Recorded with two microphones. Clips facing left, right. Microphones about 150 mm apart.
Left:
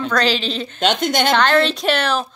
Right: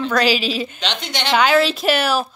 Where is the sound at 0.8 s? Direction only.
50° left (ahead or behind).